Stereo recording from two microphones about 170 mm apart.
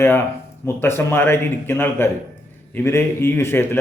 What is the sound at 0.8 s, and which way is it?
A man's voice, 15° left (ahead or behind).